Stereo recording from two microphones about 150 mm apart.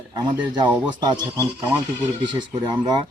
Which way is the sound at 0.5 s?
30° right (ahead or behind).